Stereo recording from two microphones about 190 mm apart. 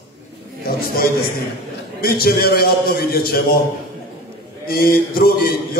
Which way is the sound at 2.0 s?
50° left (ahead or behind).